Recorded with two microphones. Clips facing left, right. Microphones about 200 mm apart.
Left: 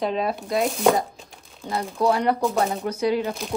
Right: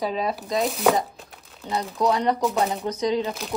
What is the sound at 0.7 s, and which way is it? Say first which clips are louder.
Chopping: left 1 dB; centre (ahead or behind).